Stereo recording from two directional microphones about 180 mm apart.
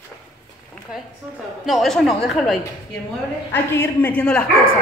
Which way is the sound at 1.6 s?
Centre (ahead or behind).